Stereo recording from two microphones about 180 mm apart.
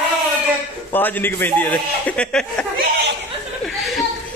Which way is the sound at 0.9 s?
10° left (ahead or behind).